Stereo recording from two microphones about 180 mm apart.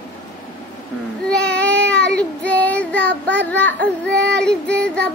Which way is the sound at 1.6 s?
5° left (ahead or behind).